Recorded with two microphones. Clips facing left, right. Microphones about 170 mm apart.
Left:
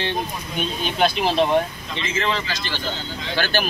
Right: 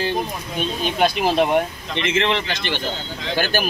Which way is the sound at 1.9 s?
60° right (ahead or behind).